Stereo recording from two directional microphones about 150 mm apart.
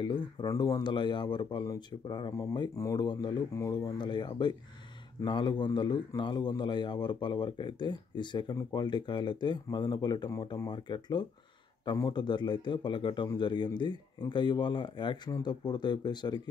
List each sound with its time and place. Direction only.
0.0 s a man's voice: 30° left (ahead or behind)